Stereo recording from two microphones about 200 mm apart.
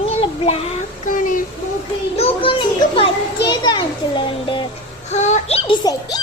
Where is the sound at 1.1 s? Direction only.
40° left (ahead or behind).